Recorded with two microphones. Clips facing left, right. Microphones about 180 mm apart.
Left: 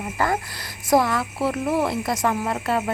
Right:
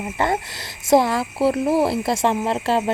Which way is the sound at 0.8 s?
25° right (ahead or behind).